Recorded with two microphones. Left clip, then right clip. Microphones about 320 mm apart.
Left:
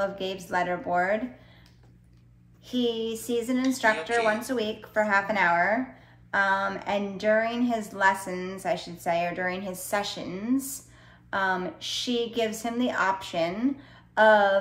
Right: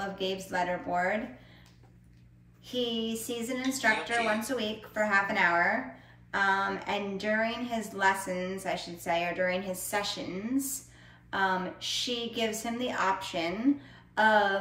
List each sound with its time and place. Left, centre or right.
0.0 s a woman's voice: centre
2.6 s a woman's voice: centre
11.2 s a woman's voice: centre